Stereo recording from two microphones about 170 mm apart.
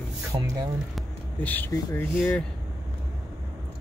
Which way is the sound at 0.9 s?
10° left (ahead or behind).